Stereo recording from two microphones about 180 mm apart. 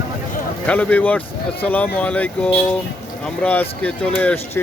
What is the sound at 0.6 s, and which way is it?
Speech, 5° left (ahead or behind).